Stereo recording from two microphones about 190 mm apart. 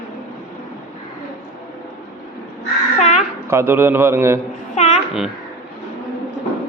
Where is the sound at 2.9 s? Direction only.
35° left (ahead or behind).